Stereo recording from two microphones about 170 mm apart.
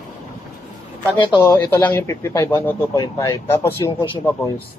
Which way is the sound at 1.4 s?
10° left (ahead or behind).